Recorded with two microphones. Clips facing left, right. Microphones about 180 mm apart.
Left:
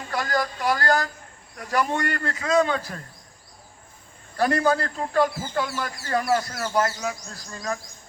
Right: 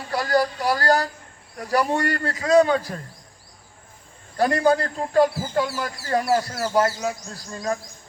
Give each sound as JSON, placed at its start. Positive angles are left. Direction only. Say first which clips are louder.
{"t": 0.1, "sound": "speech", "louder": "right 5 dB", "side_deg": -35}
{"t": 4.4, "sound": "speech", "louder": "right 2 dB", "side_deg": -35}